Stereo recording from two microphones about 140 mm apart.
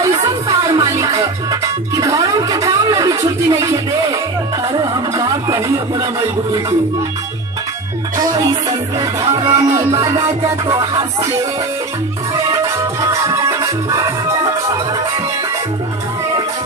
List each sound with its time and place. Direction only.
0.0 s music: 25° right (ahead or behind)
4.7 s a sound: 25° right (ahead or behind)
9.4 s music: 25° right (ahead or behind)
10.7 s music: 25° right (ahead or behind)
13.0 s music: 20° right (ahead or behind)